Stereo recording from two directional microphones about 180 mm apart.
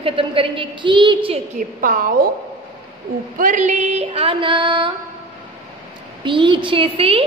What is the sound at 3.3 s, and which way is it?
A woman's voice, 45° right (ahead or behind).